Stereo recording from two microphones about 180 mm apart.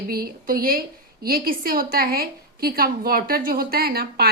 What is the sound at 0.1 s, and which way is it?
A woman's voice, 55° right (ahead or behind).